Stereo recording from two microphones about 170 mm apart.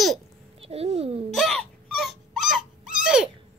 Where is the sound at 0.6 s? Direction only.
35° right (ahead or behind).